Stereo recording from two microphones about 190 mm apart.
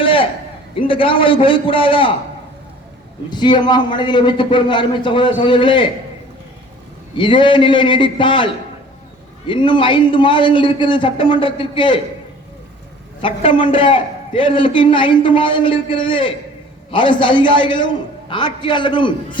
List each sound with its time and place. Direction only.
0.0 s a sound: 30° left (ahead or behind)
0.8 s a man's voice: 30° left (ahead or behind)
3.2 s a man's voice: 25° left (ahead or behind)
7.2 s a man's voice: 25° left (ahead or behind)
9.5 s a man's voice: 25° left (ahead or behind)
13.2 s a man's voice: 25° left (ahead or behind)